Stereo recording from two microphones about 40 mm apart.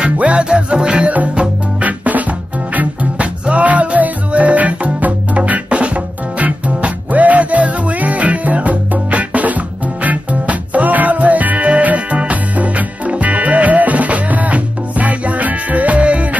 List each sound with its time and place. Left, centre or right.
0.0 s music: right